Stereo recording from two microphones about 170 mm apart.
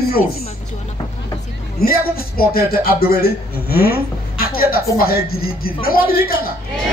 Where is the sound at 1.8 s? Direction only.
60° left (ahead or behind).